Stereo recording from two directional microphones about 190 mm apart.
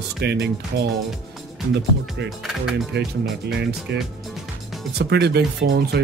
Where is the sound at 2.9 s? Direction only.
60° right (ahead or behind).